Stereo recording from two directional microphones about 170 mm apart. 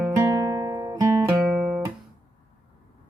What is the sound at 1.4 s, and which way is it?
Music, 5° right (ahead or behind).